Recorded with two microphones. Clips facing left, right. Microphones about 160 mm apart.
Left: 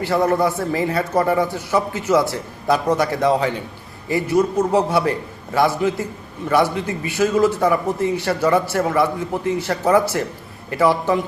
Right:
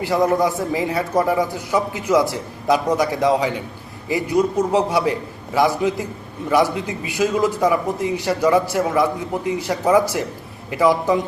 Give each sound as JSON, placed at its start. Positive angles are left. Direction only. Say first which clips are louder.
{"t": 0.0, "sound": "a man's voice", "louder": "even", "side_deg": -15}